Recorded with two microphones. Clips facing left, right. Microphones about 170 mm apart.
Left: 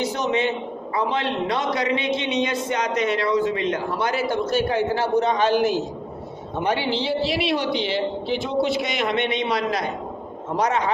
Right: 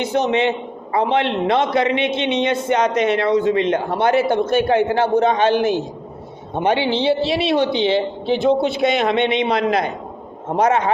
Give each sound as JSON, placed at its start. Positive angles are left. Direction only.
{"t": 0.0, "sound": "a man's voice", "side_deg": -60}
{"t": 5.5, "sound": "a man's voice", "side_deg": -20}
{"t": 9.5, "sound": "a man's voice", "side_deg": -55}